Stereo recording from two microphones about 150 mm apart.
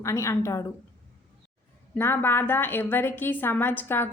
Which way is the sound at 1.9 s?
15° left (ahead or behind).